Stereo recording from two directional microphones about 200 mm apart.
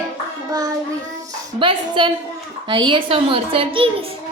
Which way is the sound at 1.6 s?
25° right (ahead or behind).